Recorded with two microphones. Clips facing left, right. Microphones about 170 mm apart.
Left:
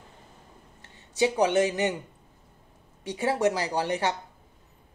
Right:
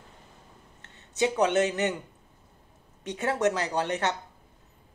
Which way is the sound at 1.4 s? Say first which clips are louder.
Even; 10° left (ahead or behind).